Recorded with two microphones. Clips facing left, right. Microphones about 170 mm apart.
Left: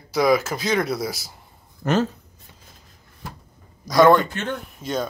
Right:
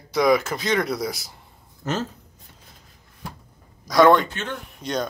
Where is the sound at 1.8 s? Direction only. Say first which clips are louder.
Left 6 dB; 65° left (ahead or behind).